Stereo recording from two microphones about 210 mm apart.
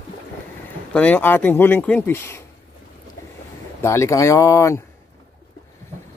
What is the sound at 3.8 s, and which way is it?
Speech, 15° left (ahead or behind).